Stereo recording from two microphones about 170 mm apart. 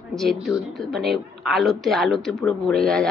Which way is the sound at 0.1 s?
Centre (ahead or behind).